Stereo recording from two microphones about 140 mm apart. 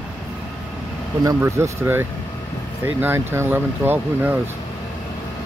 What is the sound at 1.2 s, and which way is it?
Speech, 20° right (ahead or behind).